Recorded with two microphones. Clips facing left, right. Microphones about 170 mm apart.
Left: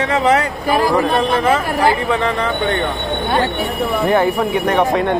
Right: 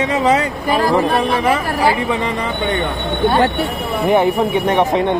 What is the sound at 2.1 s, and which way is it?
Speech, 15° right (ahead or behind).